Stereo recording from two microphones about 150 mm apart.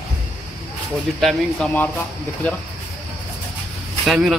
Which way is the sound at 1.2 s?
5° left (ahead or behind).